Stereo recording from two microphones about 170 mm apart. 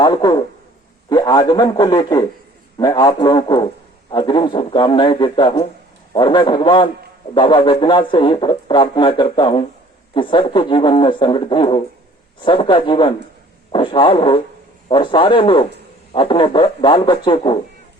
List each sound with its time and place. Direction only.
0.0 s a man's voice: 25° left (ahead or behind)